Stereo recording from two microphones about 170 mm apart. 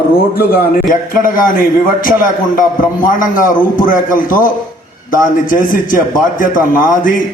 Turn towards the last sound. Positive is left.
turn(degrees=55)  # may be behind; listen again after turning